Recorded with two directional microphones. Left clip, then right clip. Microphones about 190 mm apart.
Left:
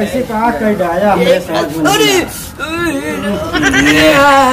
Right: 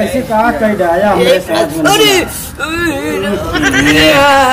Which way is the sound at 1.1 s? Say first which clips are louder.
Right 2 dB; 20° right (ahead or behind).